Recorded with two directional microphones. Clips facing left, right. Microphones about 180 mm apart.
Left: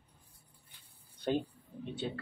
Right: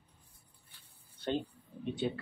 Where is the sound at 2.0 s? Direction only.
15° right (ahead or behind).